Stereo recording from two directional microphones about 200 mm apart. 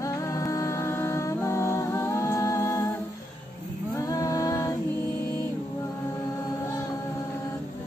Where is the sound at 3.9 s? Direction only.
15° left (ahead or behind).